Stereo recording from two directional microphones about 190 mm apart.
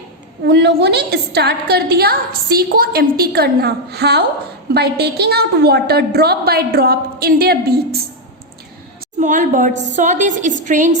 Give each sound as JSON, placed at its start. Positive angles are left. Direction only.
{"t": 0.4, "sound": "a woman's voice", "side_deg": -60}
{"t": 9.2, "sound": "a woman's voice", "side_deg": -40}